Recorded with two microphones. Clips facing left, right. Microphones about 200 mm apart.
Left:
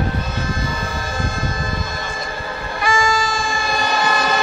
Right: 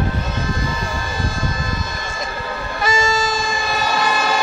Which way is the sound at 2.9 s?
25° right (ahead or behind).